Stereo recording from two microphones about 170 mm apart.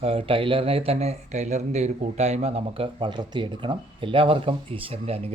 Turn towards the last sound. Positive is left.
turn(degrees=-35)  # may be behind; listen again after turning